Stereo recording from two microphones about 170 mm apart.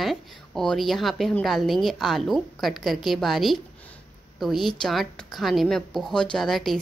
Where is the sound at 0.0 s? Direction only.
Centre (ahead or behind).